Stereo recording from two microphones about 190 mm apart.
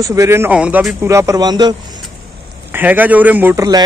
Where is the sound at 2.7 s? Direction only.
10° right (ahead or behind).